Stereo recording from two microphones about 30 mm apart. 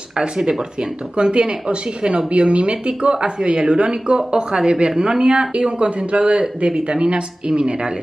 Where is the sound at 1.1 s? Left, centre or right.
Right.